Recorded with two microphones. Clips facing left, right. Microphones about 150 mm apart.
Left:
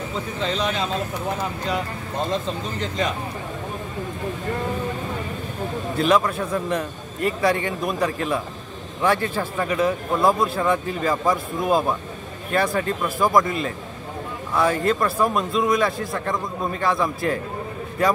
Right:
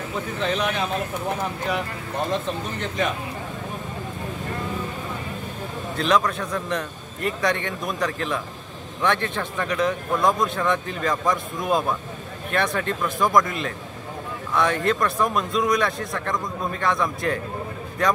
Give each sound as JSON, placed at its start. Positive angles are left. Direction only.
{"t": 0.4, "sound": "speech", "side_deg": 20}
{"t": 5.9, "sound": "a man's voice", "side_deg": 5}